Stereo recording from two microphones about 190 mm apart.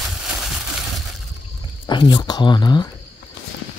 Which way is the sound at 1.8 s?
25° left (ahead or behind).